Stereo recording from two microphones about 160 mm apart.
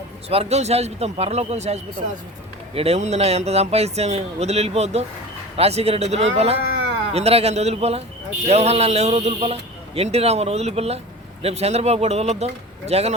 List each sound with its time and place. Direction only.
0.3 s a man's voice: 40° right (ahead or behind)